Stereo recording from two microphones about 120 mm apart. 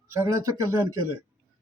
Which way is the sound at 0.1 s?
25° right (ahead or behind).